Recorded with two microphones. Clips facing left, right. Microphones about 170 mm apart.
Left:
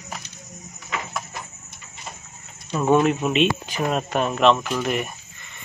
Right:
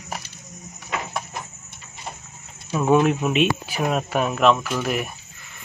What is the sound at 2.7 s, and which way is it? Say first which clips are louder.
Speech: even; 5° right (ahead or behind).